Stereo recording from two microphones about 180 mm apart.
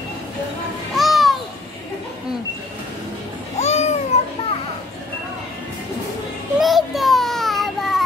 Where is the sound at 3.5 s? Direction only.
35° left (ahead or behind).